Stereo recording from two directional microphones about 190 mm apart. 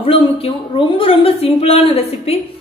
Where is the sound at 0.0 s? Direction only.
30° left (ahead or behind).